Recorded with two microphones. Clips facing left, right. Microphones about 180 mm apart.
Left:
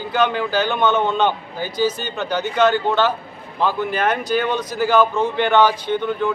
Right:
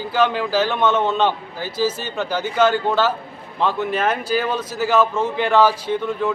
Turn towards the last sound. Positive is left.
turn(degrees=-5)  # may be behind; listen again after turning